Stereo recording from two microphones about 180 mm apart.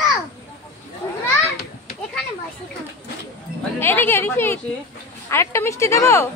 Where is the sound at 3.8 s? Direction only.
10° left (ahead or behind).